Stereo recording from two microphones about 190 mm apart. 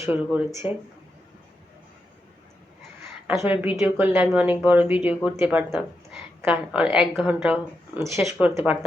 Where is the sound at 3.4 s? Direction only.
10° right (ahead or behind).